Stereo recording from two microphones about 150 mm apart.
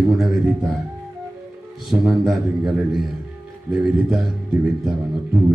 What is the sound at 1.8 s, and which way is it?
Speech, centre (ahead or behind).